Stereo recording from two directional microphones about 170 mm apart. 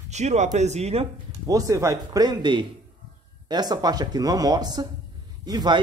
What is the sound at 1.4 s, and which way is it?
Speech, 20° right (ahead or behind).